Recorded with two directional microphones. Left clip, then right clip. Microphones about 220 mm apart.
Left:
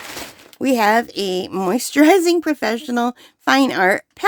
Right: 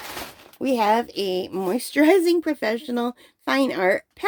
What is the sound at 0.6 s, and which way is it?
Speech, 35° left (ahead or behind).